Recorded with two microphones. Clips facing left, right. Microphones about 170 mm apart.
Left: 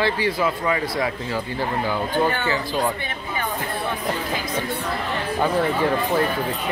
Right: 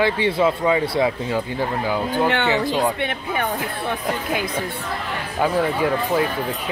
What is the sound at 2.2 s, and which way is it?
Speech, 75° right (ahead or behind).